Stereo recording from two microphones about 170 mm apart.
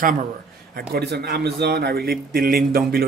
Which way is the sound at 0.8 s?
70° right (ahead or behind).